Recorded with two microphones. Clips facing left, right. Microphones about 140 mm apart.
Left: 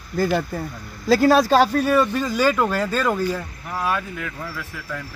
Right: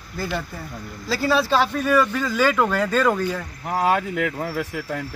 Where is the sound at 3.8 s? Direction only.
80° right.